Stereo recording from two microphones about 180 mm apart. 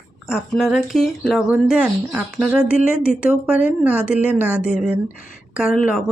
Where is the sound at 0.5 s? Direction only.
Centre (ahead or behind).